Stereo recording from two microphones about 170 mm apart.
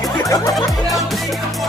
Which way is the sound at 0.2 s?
20° left (ahead or behind).